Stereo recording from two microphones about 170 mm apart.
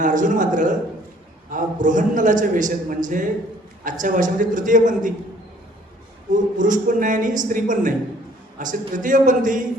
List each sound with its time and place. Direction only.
0.0 s a man's voice: 50° right (ahead or behind)
6.6 s a man's voice: 50° right (ahead or behind)